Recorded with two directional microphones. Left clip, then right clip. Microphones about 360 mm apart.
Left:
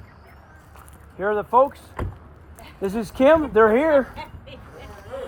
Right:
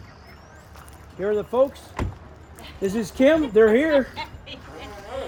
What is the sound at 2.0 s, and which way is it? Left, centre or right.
Vehicle, right.